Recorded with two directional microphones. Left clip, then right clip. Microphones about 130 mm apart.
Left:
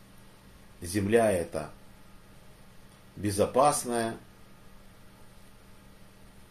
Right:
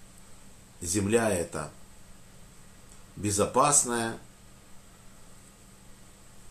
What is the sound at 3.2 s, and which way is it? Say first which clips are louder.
Speech: left 1 dB; 25° right (ahead or behind).